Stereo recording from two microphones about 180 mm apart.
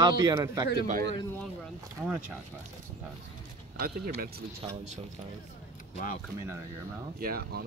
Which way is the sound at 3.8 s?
60° right (ahead or behind).